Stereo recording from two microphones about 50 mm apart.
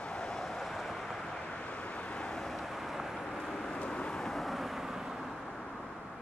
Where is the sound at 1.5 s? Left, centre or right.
Left; by 3.5 s centre.